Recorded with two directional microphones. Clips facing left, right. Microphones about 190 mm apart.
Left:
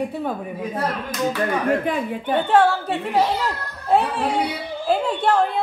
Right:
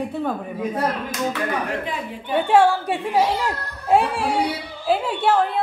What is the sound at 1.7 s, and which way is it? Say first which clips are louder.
Speech: left 6 dB; 50° left (ahead or behind).